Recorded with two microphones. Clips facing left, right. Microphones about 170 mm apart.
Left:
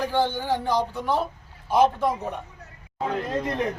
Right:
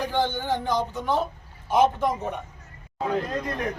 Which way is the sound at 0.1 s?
5° left (ahead or behind).